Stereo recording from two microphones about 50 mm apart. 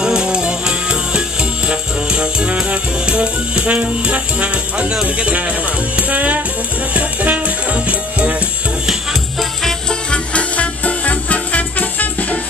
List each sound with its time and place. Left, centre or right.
0.0 s music: centre
5.0 s speech: right
5.9 s music: right
9.4 s music: centre
10.1 s music: left